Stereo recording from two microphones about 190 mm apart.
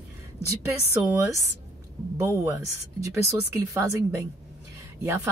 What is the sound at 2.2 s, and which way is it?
Speech, 15° right (ahead or behind).